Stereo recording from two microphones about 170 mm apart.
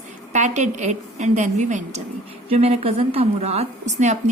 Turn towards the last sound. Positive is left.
turn(degrees=-45)  # may be behind; listen again after turning